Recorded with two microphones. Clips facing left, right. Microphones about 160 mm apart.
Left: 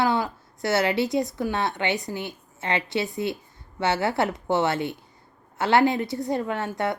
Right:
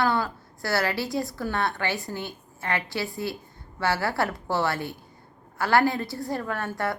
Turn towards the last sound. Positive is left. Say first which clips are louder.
# left 2 dB
turn(degrees=20)  # may be behind; listen again after turning